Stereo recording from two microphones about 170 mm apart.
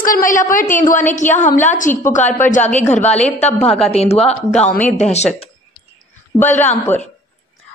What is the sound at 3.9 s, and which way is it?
Speech, 40° left (ahead or behind).